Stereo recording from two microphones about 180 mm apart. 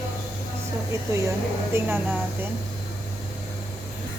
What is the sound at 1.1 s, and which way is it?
A woman's voice, 15° right (ahead or behind).